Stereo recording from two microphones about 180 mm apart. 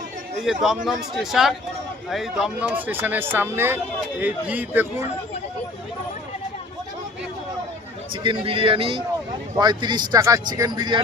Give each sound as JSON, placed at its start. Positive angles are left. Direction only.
{"t": 0.4, "sound": "speech", "side_deg": 0}
{"t": 8.1, "sound": "speech", "side_deg": -30}